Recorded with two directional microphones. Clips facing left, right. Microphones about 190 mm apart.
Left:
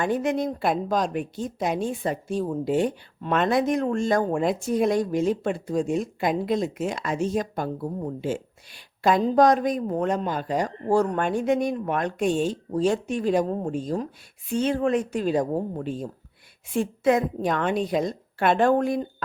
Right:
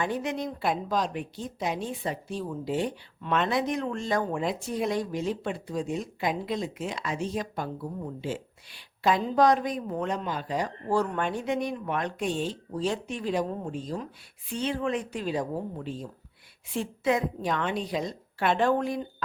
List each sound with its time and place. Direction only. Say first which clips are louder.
0.0 s a woman's voice: left 6 dB; 50° left (ahead or behind)